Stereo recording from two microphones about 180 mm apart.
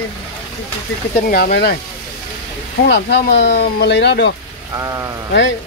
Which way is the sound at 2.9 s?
70° left (ahead or behind).